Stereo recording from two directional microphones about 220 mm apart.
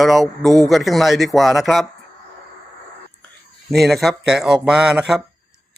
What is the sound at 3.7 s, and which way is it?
Speech, centre (ahead or behind).